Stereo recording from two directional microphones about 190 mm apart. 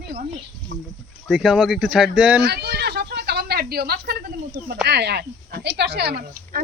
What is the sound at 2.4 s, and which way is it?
A woman's voice, 60° right (ahead or behind).